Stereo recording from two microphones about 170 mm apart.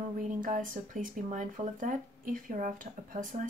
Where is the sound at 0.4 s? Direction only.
50° right (ahead or behind).